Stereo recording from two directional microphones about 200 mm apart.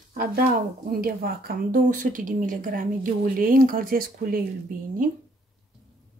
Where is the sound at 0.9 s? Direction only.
50° right (ahead or behind).